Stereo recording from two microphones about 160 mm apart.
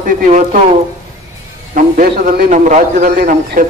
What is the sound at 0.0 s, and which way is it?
Speech, 55° right (ahead or behind).